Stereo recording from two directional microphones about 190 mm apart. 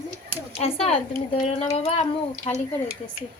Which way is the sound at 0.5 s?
30° left (ahead or behind).